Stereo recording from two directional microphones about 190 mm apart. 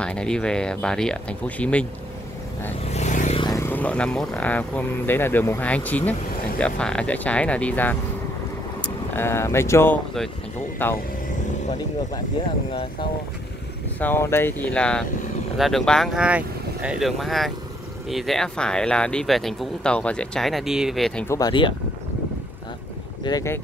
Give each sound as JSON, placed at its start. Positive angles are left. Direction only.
{"t": 0.0, "sound": "speech", "side_deg": 5}
{"t": 2.9, "sound": "vehicle", "side_deg": 40}
{"t": 3.3, "sound": "speech", "side_deg": 20}
{"t": 9.1, "sound": "speech", "side_deg": 10}
{"t": 13.9, "sound": "speech", "side_deg": 10}
{"t": 21.3, "sound": "speech", "side_deg": 20}
{"t": 23.2, "sound": "speech", "side_deg": 15}